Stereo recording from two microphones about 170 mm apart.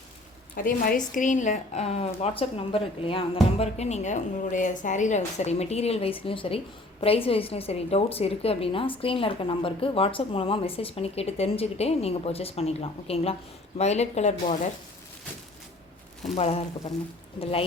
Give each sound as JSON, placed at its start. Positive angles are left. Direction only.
{"t": 0.5, "sound": "a woman's voice", "side_deg": 55}
{"t": 16.3, "sound": "a woman's voice", "side_deg": 35}